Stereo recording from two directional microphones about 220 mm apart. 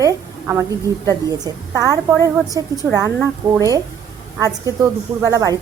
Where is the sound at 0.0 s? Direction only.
15° right (ahead or behind).